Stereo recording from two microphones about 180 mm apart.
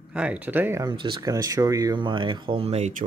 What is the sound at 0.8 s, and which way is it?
Speech, 25° right (ahead or behind).